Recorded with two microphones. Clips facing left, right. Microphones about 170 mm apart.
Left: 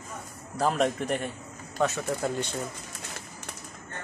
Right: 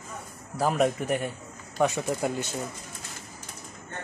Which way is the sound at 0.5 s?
10° right (ahead or behind).